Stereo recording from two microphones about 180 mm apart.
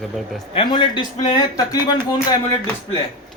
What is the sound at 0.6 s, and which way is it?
Speech, 25° left (ahead or behind).